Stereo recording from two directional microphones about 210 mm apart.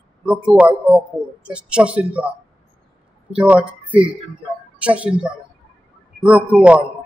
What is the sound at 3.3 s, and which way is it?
A man's voice, 5° right (ahead or behind).